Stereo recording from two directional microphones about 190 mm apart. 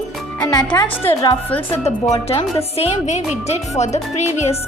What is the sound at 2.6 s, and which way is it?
A woman's voice, 30° left (ahead or behind).